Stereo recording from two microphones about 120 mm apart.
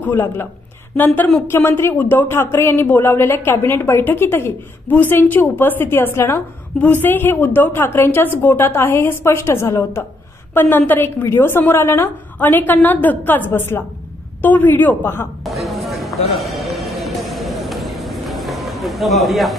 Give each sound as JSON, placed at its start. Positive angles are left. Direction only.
{"t": 0.0, "sound": "a man's voice", "side_deg": 20}
{"t": 15.4, "sound": "music", "side_deg": 0}